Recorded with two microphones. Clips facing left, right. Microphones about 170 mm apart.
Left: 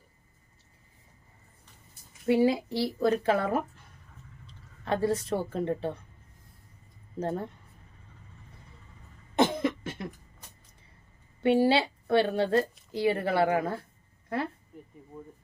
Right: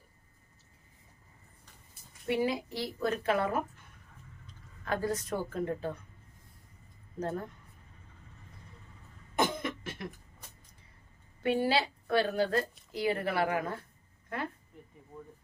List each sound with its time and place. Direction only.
2.2 s a woman's voice: 25° left (ahead or behind)
4.9 s a woman's voice: 30° left (ahead or behind)
7.2 s a woman's voice: 30° left (ahead or behind)
9.3 s cough: 25° left (ahead or behind)
11.3 s a woman's voice: 30° left (ahead or behind)